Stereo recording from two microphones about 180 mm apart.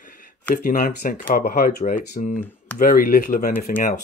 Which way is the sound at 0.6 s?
50° left (ahead or behind).